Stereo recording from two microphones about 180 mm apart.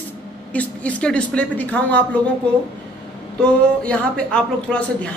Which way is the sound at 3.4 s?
5° left (ahead or behind).